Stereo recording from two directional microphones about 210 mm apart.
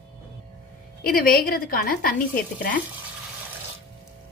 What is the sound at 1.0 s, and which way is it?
A woman's voice, 45° left (ahead or behind).